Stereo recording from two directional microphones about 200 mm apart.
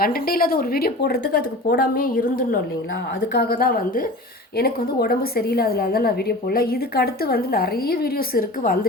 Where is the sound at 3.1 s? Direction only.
55° left (ahead or behind).